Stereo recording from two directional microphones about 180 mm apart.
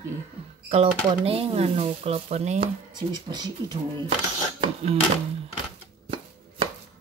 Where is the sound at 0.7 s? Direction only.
30° right (ahead or behind).